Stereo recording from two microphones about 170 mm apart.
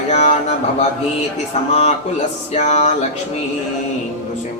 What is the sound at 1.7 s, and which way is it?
Music, 40° left (ahead or behind).